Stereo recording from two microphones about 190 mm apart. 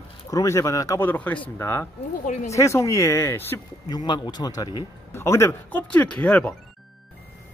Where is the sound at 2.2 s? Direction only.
35° left (ahead or behind).